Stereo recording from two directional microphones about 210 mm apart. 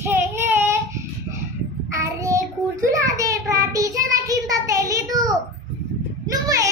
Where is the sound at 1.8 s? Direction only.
15° right (ahead or behind).